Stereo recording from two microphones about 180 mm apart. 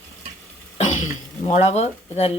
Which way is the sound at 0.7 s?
40° left (ahead or behind).